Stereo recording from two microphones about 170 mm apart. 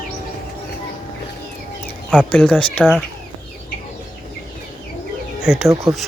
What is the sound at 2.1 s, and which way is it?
Chicken, 5° left (ahead or behind).